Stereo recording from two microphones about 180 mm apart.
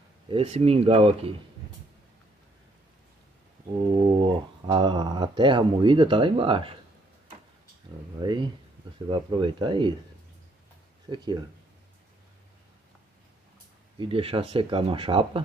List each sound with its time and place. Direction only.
0.3 s speech: 35° right (ahead or behind)
3.9 s speech: 30° right (ahead or behind)
8.2 s speech: 25° right (ahead or behind)
11.1 s speech: 25° right (ahead or behind)
13.9 s speech: 30° right (ahead or behind)